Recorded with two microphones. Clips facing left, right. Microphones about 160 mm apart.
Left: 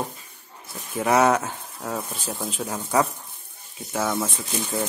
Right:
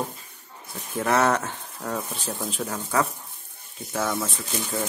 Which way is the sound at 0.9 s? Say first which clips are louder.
Left 3 dB; 10° left (ahead or behind).